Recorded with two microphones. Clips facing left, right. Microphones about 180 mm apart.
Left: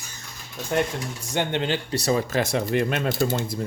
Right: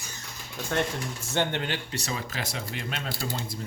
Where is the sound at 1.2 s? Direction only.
15° left (ahead or behind).